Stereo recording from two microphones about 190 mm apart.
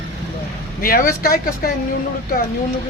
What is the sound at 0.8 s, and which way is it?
Speech, 50° left (ahead or behind).